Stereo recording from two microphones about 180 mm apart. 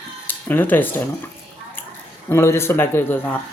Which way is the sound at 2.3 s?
15° left (ahead or behind).